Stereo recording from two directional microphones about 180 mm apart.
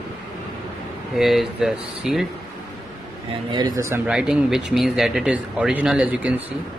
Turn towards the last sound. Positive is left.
turn(degrees=-10)  # may be behind; listen again after turning